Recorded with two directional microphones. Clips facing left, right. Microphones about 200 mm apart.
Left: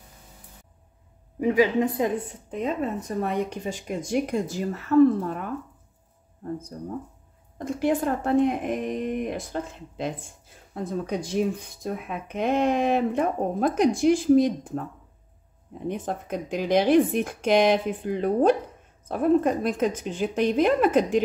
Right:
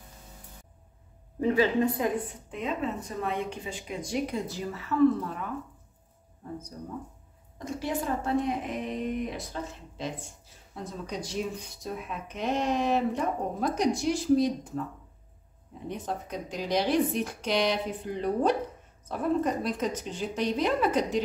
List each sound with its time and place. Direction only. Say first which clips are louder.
1.4 s speech: left 3 dB; 15° left (ahead or behind)
2.5 s a woman's voice: left 4 dB; 40° left (ahead or behind)
7.5 s a woman's voice: left 7 dB; 55° left (ahead or behind)
15.9 s a woman's voice: left 5 dB; 55° left (ahead or behind)